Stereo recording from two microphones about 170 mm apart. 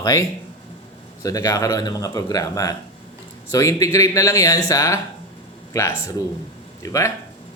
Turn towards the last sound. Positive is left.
turn(degrees=20)  # may be behind; listen again after turning